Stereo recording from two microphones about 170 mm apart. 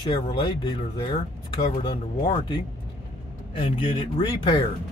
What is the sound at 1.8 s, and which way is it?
Speech, 30° left (ahead or behind).